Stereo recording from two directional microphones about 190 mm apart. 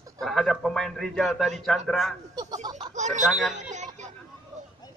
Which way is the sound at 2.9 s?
40° right (ahead or behind).